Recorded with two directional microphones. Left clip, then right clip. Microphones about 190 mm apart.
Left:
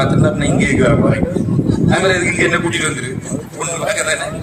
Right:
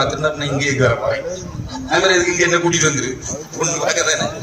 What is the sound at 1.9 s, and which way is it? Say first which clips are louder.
A man's voice: right 2 dB; 20° right (ahead or behind).